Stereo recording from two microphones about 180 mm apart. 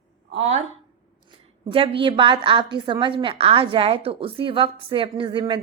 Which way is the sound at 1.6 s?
30° right (ahead or behind).